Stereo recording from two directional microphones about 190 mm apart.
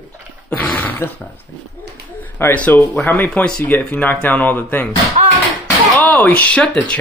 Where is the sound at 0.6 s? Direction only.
10° left (ahead or behind).